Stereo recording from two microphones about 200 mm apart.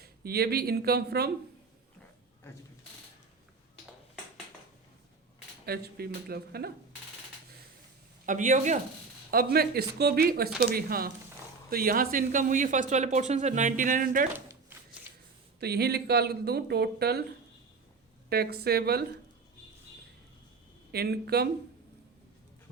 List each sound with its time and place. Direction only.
0.0 s speech: 50° right (ahead or behind)
5.6 s speech: 50° right (ahead or behind)
8.3 s speech: 40° right (ahead or behind)
9.3 s speech: 50° right (ahead or behind)
15.6 s speech: 55° right (ahead or behind)
18.3 s speech: 50° right (ahead or behind)
20.9 s speech: 50° right (ahead or behind)